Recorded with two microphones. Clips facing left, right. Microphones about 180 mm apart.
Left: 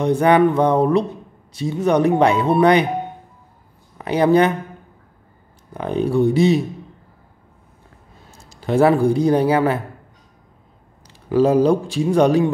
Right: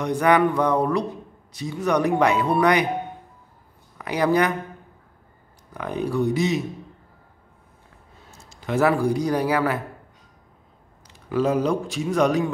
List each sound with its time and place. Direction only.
0.0 s speech: 25° left (ahead or behind)
4.0 s speech: 25° left (ahead or behind)
5.7 s speech: 30° left (ahead or behind)
8.3 s a man's voice: 35° left (ahead or behind)
11.2 s speech: 35° left (ahead or behind)